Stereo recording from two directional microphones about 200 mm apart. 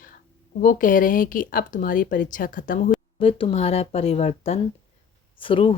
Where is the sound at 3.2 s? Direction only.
25° left (ahead or behind).